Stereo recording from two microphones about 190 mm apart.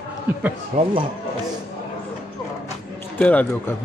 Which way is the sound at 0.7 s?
40° right (ahead or behind).